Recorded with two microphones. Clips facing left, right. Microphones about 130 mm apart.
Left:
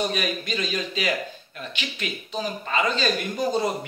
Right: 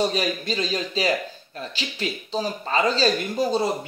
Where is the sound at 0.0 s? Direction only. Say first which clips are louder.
Right 3 dB; 30° right (ahead or behind).